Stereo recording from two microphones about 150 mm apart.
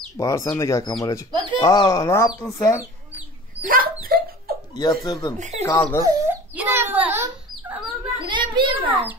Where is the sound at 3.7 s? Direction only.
75° right (ahead or behind).